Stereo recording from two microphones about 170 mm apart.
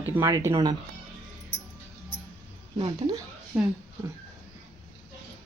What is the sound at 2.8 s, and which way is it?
Speech, 25° right (ahead or behind).